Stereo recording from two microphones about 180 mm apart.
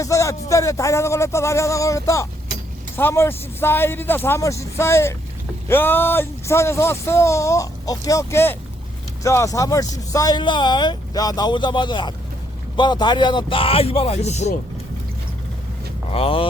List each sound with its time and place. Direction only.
0.0 s speech: 15° left (ahead or behind); by 14.5 s 40° left (ahead or behind)
16.0 s speech: 30° left (ahead or behind)